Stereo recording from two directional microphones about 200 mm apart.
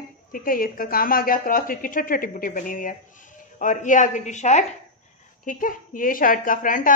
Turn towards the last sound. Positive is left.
turn(degrees=40)  # may be behind; listen again after turning